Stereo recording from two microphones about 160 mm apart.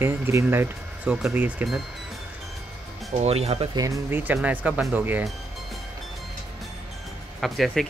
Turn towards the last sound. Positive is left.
turn(degrees=0)  # may be behind; listen again after turning